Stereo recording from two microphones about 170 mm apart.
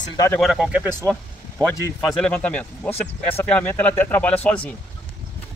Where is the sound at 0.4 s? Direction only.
5° right (ahead or behind).